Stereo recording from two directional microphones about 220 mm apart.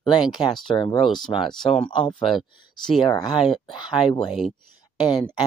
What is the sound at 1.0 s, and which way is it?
Speech, centre (ahead or behind).